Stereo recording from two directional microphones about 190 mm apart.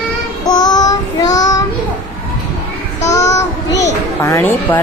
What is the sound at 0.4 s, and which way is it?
Child singing, 20° left (ahead or behind).